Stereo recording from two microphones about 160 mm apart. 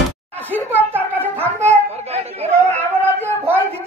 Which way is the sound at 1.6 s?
40° right (ahead or behind).